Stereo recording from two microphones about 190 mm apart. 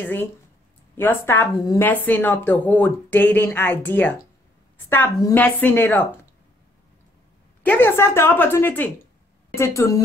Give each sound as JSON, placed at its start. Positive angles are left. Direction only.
{"t": 0.0, "sound": "a woman's voice", "side_deg": 10}
{"t": 7.6, "sound": "a woman's voice", "side_deg": 10}